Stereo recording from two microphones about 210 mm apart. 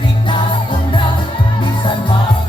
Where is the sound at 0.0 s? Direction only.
25° left (ahead or behind).